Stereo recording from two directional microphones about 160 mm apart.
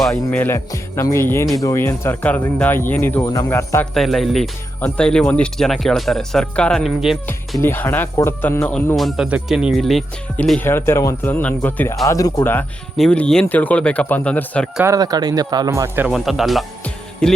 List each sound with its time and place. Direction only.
0.0 s speech: 5° left (ahead or behind)
3.9 s speech: centre (ahead or behind)
7.6 s speech: 10° left (ahead or behind)
10.6 s speech: 15° left (ahead or behind)
14.8 s speech: 25° right (ahead or behind)
16.0 s speech: centre (ahead or behind)